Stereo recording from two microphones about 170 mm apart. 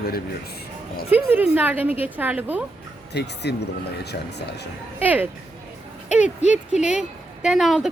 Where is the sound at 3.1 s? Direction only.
80° left.